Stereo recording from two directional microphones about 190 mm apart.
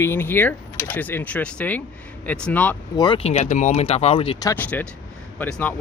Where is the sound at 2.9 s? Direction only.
25° left (ahead or behind).